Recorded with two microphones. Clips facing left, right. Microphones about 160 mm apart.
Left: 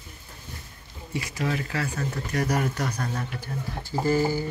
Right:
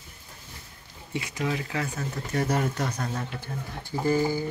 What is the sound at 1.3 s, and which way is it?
Speech, 10° right (ahead or behind).